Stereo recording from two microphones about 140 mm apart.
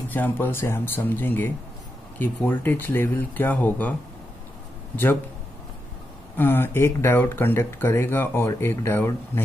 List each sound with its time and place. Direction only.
0.1 s speech: 15° left (ahead or behind)
6.3 s speech: 15° left (ahead or behind)